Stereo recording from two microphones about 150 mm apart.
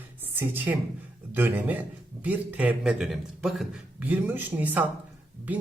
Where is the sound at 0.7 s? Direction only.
15° right (ahead or behind).